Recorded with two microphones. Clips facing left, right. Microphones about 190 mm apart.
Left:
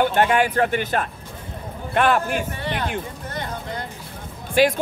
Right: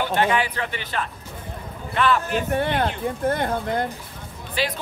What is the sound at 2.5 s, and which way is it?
Speech, 55° right (ahead or behind).